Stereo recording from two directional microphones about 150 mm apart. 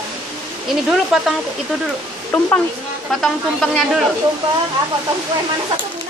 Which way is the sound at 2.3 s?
5° left (ahead or behind).